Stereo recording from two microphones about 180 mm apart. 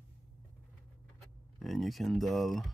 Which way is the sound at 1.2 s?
Centre (ahead or behind).